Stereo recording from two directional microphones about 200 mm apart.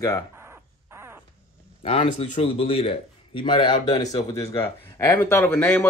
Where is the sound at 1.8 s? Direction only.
30° left (ahead or behind).